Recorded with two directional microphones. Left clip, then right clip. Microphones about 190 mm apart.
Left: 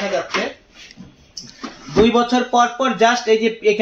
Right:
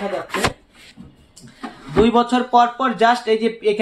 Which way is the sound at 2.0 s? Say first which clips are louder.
Left 1 dB; 5° left (ahead or behind).